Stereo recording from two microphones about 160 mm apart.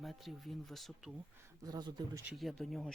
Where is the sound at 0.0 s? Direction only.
Centre (ahead or behind).